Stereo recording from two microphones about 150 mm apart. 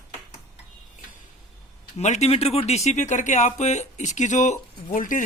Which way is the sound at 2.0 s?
50° left (ahead or behind).